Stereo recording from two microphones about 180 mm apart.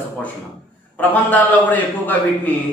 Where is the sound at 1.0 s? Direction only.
10° left (ahead or behind).